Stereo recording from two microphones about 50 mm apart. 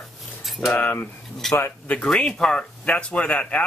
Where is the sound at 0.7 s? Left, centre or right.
Left.